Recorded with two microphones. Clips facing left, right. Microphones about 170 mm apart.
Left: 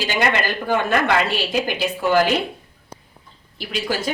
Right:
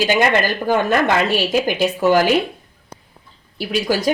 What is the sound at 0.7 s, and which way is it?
Speech, 45° right (ahead or behind).